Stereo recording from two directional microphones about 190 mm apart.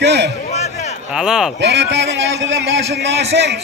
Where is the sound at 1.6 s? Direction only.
65° right (ahead or behind).